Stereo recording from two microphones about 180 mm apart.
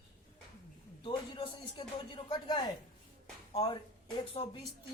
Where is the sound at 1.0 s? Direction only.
25° left (ahead or behind).